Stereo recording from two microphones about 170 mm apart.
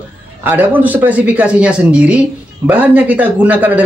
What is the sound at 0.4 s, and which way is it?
Speech, 10° right (ahead or behind).